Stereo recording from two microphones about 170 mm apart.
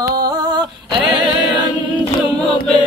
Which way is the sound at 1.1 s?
25° right (ahead or behind).